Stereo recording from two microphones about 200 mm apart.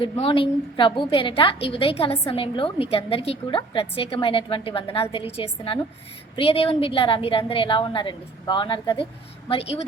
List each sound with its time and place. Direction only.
0.0 s a woman's voice: 25° left (ahead or behind)